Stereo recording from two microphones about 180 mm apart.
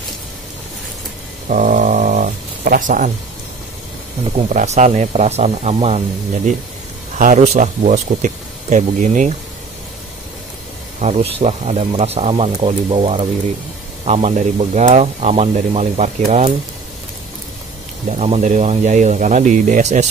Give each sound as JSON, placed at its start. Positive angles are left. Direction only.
{"t": 1.5, "sound": "a sound", "side_deg": -45}
{"t": 4.5, "sound": "speech", "side_deg": -40}
{"t": 11.0, "sound": "speech", "side_deg": -35}
{"t": 18.0, "sound": "speech", "side_deg": -40}